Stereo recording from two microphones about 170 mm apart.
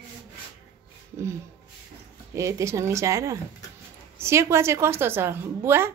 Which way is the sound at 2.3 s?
15° right (ahead or behind).